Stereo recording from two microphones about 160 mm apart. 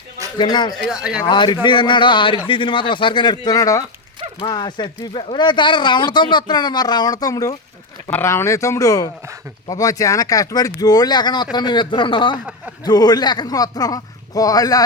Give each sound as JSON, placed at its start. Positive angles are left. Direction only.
{"t": 0.3, "sound": "speech", "side_deg": 30}
{"t": 0.7, "sound": "speech", "side_deg": -5}
{"t": 1.2, "sound": "speech", "side_deg": 30}